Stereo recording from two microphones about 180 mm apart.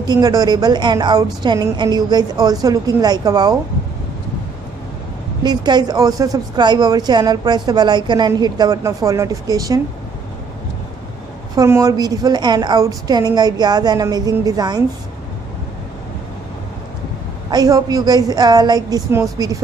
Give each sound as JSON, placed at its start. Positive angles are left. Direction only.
{"t": 0.0, "sound": "speech", "side_deg": -20}
{"t": 5.4, "sound": "speech", "side_deg": -25}
{"t": 11.5, "sound": "speech", "side_deg": -20}
{"t": 17.5, "sound": "speech", "side_deg": -20}